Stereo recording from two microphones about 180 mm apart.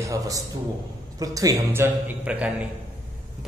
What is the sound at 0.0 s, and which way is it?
A man's voice, 20° right (ahead or behind).